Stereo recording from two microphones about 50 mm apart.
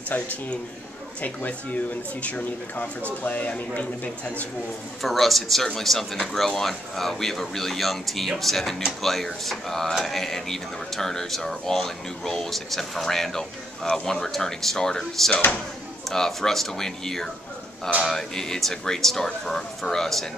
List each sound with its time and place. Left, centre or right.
0.1 s speech: left
5.0 s speech: centre